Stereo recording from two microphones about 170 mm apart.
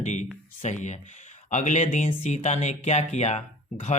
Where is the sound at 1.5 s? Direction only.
45° left (ahead or behind).